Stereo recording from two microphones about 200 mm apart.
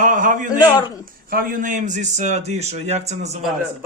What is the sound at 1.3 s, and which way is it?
A man's voice, 45° right (ahead or behind).